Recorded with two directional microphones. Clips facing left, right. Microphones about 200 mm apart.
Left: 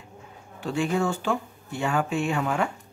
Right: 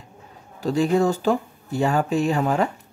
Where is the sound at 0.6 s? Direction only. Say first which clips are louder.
Right 6 dB; 40° right (ahead or behind).